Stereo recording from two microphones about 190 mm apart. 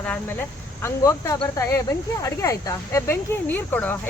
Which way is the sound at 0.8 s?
15° left (ahead or behind).